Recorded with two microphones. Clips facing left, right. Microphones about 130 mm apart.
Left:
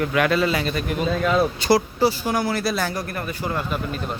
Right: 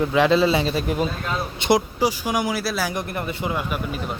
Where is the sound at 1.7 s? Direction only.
15° right (ahead or behind).